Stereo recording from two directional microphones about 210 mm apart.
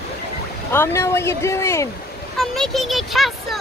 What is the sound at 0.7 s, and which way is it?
Speech, 10° left (ahead or behind).